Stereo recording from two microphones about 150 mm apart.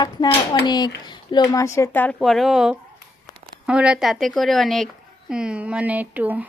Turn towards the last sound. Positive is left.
turn(degrees=-10)  # may be behind; listen again after turning